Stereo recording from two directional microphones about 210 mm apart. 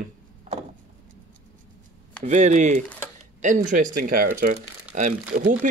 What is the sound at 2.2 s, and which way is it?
Speech, 35° right (ahead or behind).